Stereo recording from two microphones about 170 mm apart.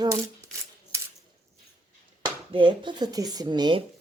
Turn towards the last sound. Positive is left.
turn(degrees=-25)  # may be behind; listen again after turning